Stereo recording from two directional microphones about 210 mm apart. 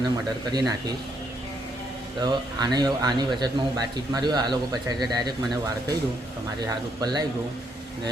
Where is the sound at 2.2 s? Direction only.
20° right (ahead or behind).